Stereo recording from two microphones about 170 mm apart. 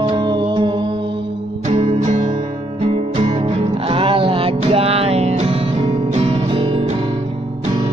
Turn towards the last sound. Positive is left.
turn(degrees=-30)  # may be behind; listen again after turning